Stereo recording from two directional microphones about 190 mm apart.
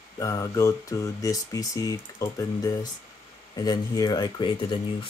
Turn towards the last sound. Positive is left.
turn(degrees=25)  # may be behind; listen again after turning